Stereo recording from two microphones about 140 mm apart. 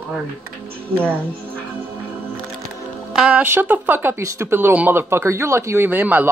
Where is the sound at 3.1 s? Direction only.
10° right (ahead or behind).